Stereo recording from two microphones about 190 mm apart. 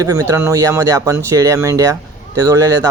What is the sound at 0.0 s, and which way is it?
Speech, 15° right (ahead or behind).